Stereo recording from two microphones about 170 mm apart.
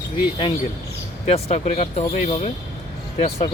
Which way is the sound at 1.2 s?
40° left (ahead or behind).